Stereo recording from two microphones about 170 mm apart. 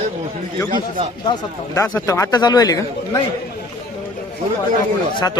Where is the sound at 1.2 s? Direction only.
20° left (ahead or behind).